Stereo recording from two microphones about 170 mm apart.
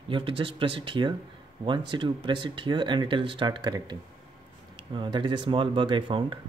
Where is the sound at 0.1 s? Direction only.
30° right (ahead or behind).